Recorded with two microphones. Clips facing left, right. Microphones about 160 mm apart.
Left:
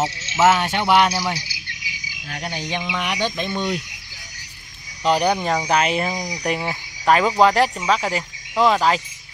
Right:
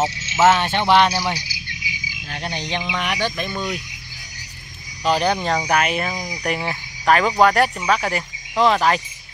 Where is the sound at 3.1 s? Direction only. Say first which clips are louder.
Left 1 dB; 20° left (ahead or behind).